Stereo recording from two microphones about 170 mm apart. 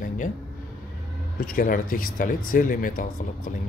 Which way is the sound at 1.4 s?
55° left (ahead or behind).